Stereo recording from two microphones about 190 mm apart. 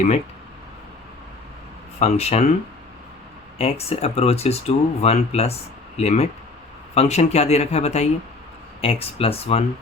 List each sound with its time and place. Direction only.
2.0 s speech: 35° left (ahead or behind)
3.6 s speech: 30° left (ahead or behind)